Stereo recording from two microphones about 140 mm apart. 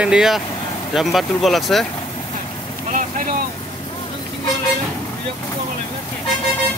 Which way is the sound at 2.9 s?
65° right (ahead or behind).